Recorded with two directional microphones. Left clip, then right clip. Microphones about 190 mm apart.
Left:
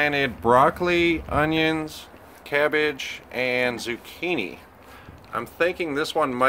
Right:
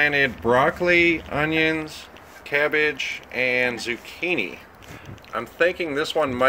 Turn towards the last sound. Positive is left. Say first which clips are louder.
# right 1 dB
turn(degrees=10)  # may be behind; listen again after turning